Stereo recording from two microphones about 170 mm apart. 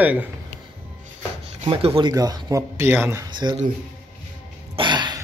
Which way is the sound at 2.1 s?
20° right (ahead or behind).